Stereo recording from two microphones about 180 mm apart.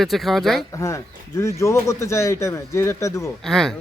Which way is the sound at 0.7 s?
15° left (ahead or behind).